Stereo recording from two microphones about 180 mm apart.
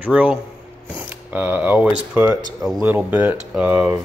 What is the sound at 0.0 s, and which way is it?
Speech, 5° right (ahead or behind).